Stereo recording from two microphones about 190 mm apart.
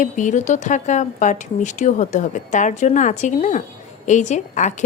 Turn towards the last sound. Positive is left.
turn(degrees=40)  # may be behind; listen again after turning